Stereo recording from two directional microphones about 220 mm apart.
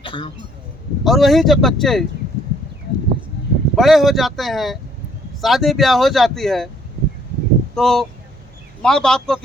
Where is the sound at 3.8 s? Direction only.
Centre (ahead or behind).